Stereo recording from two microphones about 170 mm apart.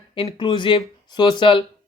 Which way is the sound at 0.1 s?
30° left (ahead or behind).